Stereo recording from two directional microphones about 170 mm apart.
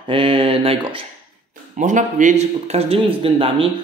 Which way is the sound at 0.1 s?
30° right (ahead or behind).